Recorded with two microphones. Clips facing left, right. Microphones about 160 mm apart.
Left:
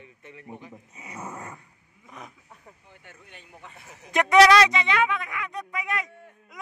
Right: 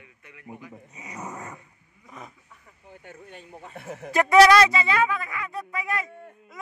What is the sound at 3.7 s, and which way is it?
Speech, 55° right (ahead or behind).